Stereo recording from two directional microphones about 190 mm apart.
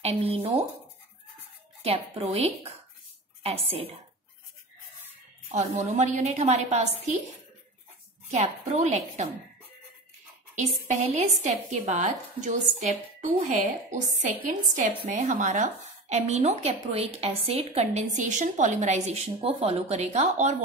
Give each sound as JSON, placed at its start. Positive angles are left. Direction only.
{"t": 0.0, "sound": "speech", "side_deg": -30}
{"t": 2.1, "sound": "speech", "side_deg": -35}
{"t": 5.5, "sound": "speech", "side_deg": -40}
{"t": 8.3, "sound": "speech", "side_deg": -35}
{"t": 10.5, "sound": "speech", "side_deg": -40}